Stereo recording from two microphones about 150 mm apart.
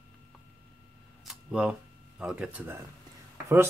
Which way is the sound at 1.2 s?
5° right (ahead or behind).